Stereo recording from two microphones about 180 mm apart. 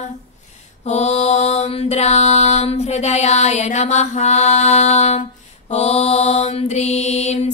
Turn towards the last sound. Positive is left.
turn(degrees=40)  # may be behind; listen again after turning